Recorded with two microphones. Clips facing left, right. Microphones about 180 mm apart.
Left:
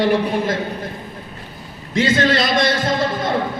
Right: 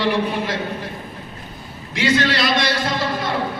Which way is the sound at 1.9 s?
50° left (ahead or behind).